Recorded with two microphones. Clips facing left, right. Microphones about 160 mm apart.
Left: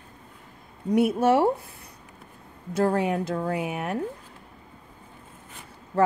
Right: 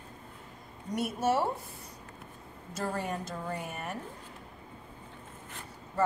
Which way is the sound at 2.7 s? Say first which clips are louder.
Left 11 dB; 65° left (ahead or behind).